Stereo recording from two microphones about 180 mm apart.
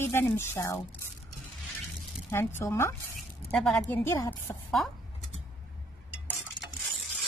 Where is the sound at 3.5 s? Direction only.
5° left (ahead or behind).